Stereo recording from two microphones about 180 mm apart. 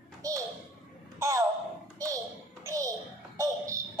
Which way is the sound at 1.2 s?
15° right (ahead or behind).